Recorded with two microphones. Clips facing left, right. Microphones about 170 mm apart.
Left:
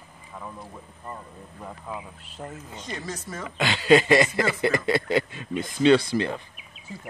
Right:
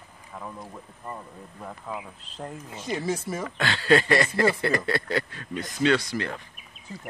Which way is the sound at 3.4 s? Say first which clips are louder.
Left 2 dB; 15° left (ahead or behind).